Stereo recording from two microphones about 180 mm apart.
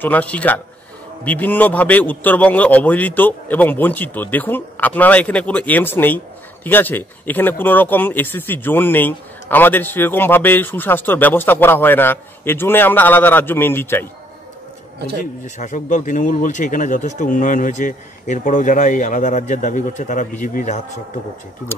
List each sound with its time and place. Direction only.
0.0 s a man's voice: 10° left (ahead or behind)
15.4 s speech: 40° left (ahead or behind)